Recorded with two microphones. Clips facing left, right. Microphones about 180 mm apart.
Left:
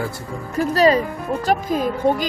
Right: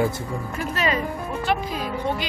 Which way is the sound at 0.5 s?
35° left (ahead or behind).